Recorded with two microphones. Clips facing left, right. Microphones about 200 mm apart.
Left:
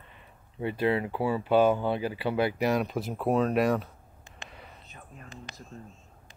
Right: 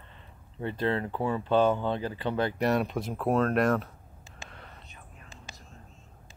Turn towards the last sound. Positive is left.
turn(degrees=0)  # may be behind; listen again after turning